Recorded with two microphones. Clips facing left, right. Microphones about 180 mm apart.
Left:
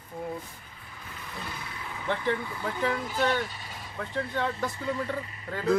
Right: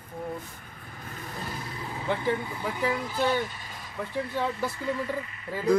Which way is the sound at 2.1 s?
10° right (ahead or behind).